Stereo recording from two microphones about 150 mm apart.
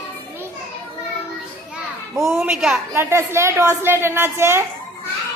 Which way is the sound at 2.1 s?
20° right (ahead or behind).